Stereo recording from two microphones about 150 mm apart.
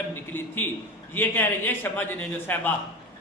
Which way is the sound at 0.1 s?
15° left (ahead or behind).